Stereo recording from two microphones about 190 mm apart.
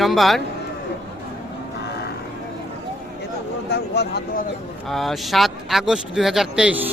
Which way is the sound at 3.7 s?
60° left (ahead or behind).